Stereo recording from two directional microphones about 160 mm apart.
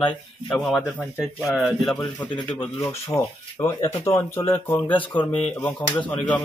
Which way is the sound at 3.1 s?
20° left (ahead or behind).